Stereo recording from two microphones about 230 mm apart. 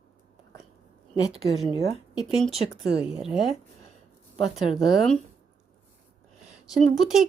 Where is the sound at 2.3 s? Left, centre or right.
Centre.